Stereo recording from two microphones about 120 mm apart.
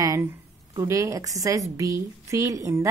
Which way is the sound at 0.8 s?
25° right (ahead or behind).